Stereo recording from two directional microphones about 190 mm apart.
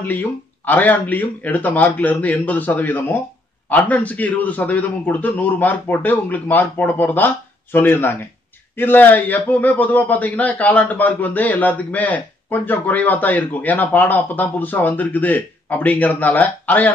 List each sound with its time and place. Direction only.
0.0 s a man's voice: 10° left (ahead or behind)